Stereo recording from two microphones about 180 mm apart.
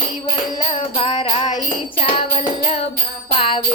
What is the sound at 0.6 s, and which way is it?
Music, 30° left (ahead or behind).